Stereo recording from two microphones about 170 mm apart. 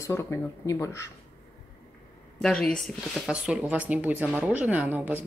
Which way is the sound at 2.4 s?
5° left (ahead or behind).